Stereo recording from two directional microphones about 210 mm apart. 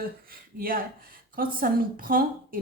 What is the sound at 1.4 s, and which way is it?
Speech, 40° right (ahead or behind).